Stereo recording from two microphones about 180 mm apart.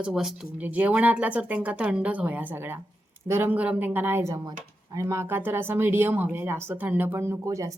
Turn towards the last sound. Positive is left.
turn(degrees=-20)  # may be behind; listen again after turning